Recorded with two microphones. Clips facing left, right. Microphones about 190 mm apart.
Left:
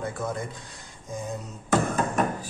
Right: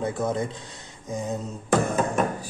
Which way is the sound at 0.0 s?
20° right (ahead or behind).